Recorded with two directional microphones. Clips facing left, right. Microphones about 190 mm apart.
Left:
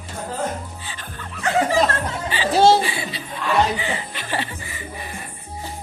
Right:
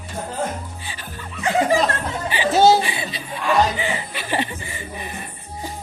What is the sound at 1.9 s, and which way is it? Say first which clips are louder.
Chatter: even; 15° right (ahead or behind).